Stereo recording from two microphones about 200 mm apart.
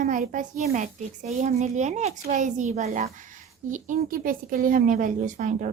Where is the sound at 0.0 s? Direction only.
40° right (ahead or behind).